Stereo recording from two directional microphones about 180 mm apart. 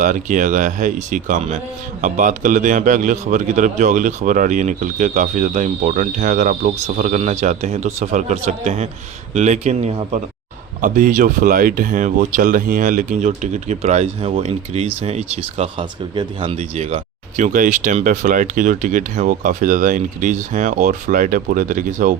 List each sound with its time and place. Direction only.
0.0 s speech: 45° right (ahead or behind)